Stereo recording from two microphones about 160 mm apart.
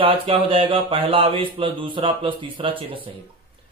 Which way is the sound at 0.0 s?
35° right (ahead or behind).